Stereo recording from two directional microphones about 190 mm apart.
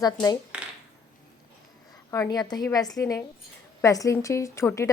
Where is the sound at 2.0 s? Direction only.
15° left (ahead or behind).